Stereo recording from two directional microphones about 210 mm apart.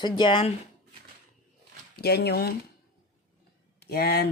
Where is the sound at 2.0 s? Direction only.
50° left (ahead or behind).